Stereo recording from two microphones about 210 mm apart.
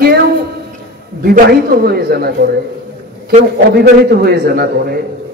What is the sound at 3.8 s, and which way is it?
A man's voice, 50° right (ahead or behind).